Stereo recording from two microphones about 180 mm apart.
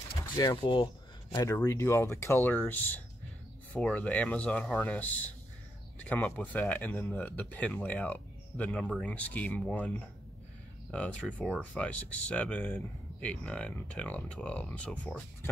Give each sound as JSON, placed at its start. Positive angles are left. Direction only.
{"t": 0.4, "sound": "speech", "side_deg": 25}